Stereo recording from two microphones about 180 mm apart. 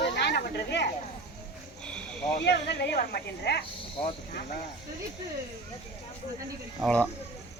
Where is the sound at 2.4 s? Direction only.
65° left (ahead or behind).